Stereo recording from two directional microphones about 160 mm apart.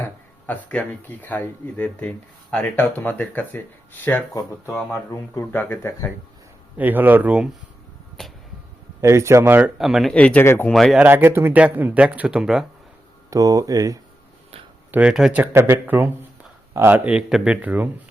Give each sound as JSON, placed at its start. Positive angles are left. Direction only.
{"t": 0.0, "sound": "speech", "side_deg": 10}
{"t": 5.3, "sound": "speech", "side_deg": 15}
{"t": 6.7, "sound": "speech", "side_deg": -10}
{"t": 8.2, "sound": "tick-tock", "side_deg": 5}
{"t": 9.0, "sound": "speech", "side_deg": -20}
{"t": 10.7, "sound": "speech", "side_deg": 5}
{"t": 11.0, "sound": "speech", "side_deg": -15}
{"t": 13.3, "sound": "speech", "side_deg": -20}
{"t": 14.9, "sound": "speech", "side_deg": -5}